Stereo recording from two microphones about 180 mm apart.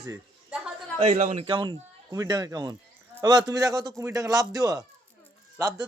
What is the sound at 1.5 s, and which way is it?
A man's voice, 25° right (ahead or behind).